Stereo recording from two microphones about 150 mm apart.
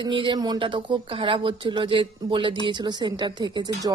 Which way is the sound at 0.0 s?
35° right (ahead or behind).